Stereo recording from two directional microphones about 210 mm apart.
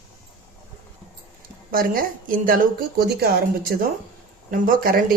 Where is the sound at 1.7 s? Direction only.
45° right (ahead or behind).